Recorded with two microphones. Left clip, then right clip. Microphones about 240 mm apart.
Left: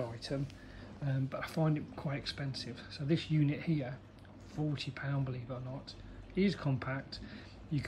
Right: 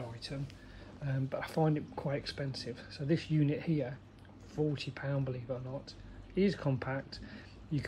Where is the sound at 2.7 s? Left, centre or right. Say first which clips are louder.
Right 3 dB; centre.